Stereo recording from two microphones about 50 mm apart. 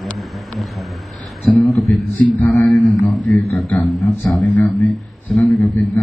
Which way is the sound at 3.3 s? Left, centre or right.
Left.